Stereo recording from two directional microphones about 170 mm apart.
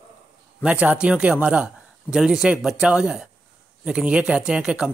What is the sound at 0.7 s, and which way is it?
A man's voice, 10° right (ahead or behind).